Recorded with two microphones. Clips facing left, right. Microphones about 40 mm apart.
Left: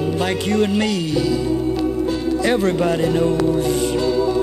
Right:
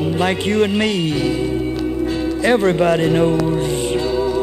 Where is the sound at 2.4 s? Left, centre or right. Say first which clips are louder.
Right 4 dB; right.